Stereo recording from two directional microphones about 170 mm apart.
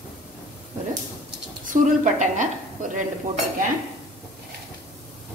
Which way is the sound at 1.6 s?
45° right (ahead or behind).